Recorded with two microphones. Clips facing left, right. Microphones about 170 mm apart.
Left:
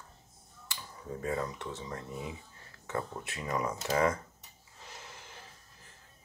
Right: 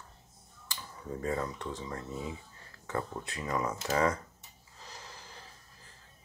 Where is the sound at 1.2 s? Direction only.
15° left (ahead or behind).